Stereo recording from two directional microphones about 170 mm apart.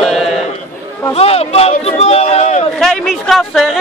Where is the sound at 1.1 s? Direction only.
35° left (ahead or behind).